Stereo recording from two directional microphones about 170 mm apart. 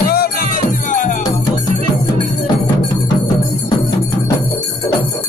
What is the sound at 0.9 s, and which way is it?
Music, 50° left (ahead or behind).